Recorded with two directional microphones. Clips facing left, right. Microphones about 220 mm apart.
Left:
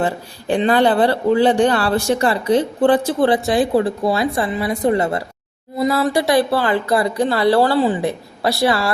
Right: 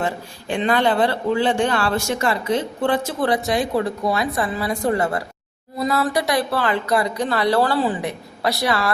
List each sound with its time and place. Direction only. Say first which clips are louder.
0.0 s a man's voice: left 4 dB; 35° left (ahead or behind)